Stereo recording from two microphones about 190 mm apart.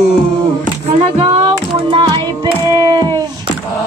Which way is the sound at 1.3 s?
30° right (ahead or behind).